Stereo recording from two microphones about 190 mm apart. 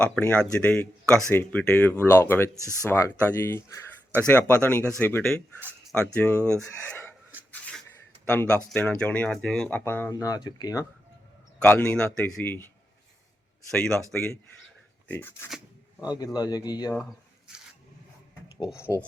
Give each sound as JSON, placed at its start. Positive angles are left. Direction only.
{"t": 0.0, "sound": "speech", "side_deg": 5}
{"t": 8.2, "sound": "speech", "side_deg": 10}
{"t": 11.6, "sound": "speech", "side_deg": 5}
{"t": 15.4, "sound": "rub", "side_deg": -5}
{"t": 16.1, "sound": "speech", "side_deg": 20}